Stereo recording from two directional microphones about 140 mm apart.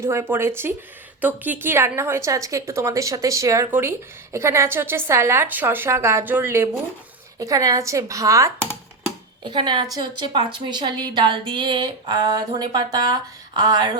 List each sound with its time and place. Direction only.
0.0 s a woman's voice: 20° right (ahead or behind)
9.4 s a woman's voice: 30° right (ahead or behind)